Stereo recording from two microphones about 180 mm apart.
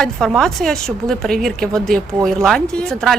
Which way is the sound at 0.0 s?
Centre (ahead or behind).